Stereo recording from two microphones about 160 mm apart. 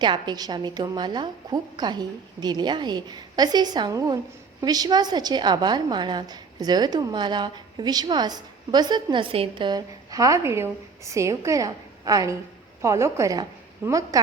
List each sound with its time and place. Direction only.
0.0 s a woman's voice: 25° right (ahead or behind)